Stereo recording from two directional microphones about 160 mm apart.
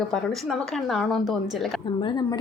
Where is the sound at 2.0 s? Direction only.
30° left (ahead or behind).